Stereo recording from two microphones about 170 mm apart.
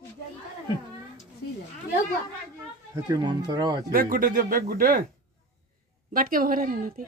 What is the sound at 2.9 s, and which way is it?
Speech, 20° right (ahead or behind).